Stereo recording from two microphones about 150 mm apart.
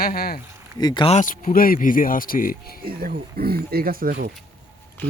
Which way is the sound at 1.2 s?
65° left (ahead or behind).